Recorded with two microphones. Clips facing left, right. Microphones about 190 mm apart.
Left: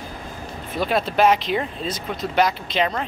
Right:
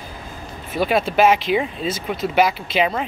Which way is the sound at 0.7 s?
5° right (ahead or behind).